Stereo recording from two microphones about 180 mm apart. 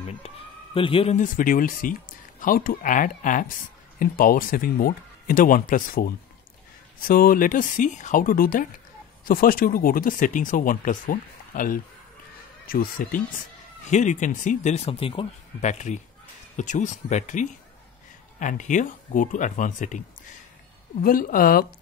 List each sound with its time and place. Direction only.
0.7 s a man's voice: 30° left (ahead or behind)
1.1 s speech: 50° left (ahead or behind)
13.8 s speech: 40° left (ahead or behind)
21.0 s speech: 50° left (ahead or behind)